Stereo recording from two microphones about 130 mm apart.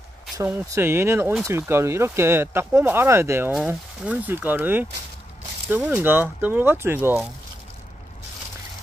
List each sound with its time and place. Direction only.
0.4 s speech: 20° right (ahead or behind)